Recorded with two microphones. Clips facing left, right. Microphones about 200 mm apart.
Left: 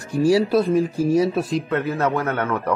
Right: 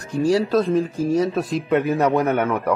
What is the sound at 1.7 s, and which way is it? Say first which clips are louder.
A man's voice: right 3 dB; 15° right (ahead or behind).